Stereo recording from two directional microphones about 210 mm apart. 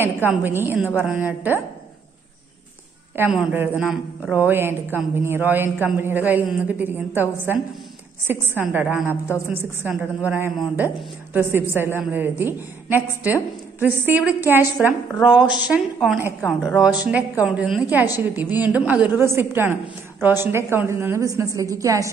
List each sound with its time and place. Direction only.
0.0 s speech: 10° right (ahead or behind)
3.2 s speech: 5° right (ahead or behind)
12.0 s a woman's voice: 10° right (ahead or behind)